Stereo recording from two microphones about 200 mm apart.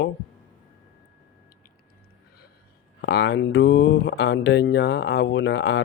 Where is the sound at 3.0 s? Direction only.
55° left (ahead or behind).